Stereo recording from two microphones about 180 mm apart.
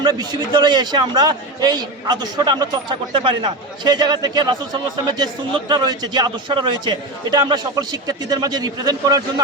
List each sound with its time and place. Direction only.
0.0 s a man's voice: 25° right (ahead or behind)